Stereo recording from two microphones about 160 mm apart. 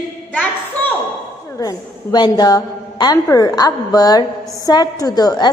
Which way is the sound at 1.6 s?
20° left (ahead or behind).